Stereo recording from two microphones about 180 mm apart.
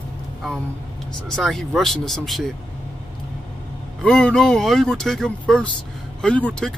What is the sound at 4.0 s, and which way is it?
Speech, 5° left (ahead or behind).